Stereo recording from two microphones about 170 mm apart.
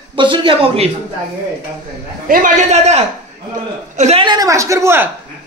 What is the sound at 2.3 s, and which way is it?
A man's voice, 50° right (ahead or behind).